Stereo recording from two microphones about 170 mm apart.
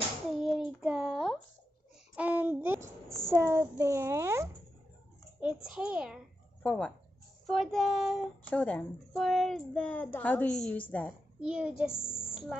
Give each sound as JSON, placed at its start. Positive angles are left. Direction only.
{"t": 0.3, "sound": "child singing", "side_deg": 0}
{"t": 0.8, "sound": "a sound", "side_deg": -5}
{"t": 3.3, "sound": "a child's voice", "side_deg": -15}
{"t": 5.4, "sound": "a child's voice", "side_deg": -5}
{"t": 6.6, "sound": "speech", "side_deg": 5}
{"t": 11.4, "sound": "a child's voice", "side_deg": -5}
{"t": 11.9, "sound": "a woman's voice", "side_deg": 35}